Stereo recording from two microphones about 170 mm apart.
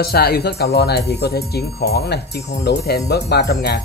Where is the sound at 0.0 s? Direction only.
65° left (ahead or behind).